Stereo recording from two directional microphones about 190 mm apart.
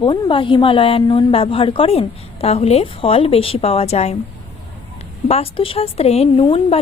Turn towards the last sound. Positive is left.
turn(degrees=30)  # may be behind; listen again after turning